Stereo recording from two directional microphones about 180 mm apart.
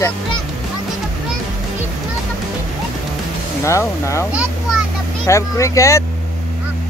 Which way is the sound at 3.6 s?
15° left (ahead or behind).